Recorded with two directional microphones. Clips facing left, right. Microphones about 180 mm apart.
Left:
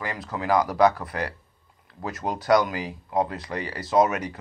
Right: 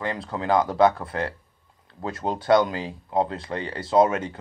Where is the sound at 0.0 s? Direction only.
30° right (ahead or behind).